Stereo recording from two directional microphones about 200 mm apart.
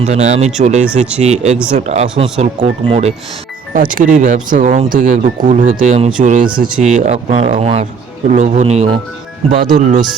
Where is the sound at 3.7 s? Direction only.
40° right (ahead or behind).